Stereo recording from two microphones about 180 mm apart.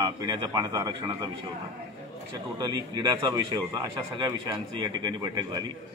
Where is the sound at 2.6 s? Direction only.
25° right (ahead or behind).